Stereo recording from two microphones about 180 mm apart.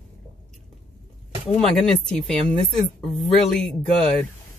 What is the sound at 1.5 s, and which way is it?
Speech, 5° left (ahead or behind).